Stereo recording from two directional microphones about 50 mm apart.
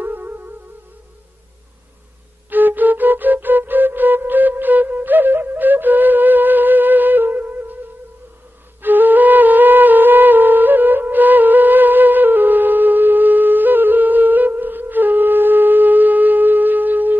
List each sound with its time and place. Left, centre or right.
0.0 s music: right
2.5 s flute: right
8.8 s music: right